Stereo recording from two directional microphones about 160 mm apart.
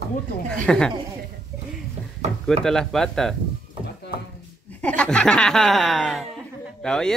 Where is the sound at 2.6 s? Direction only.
5° left (ahead or behind).